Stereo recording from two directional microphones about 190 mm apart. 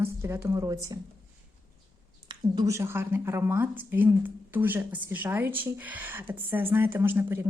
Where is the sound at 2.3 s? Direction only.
20° right (ahead or behind).